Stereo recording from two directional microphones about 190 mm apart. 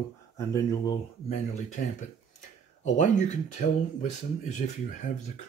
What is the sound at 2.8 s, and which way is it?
Speech, 40° left (ahead or behind).